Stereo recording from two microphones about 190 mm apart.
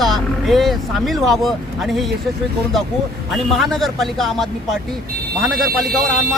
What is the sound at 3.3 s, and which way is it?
Speech, centre (ahead or behind).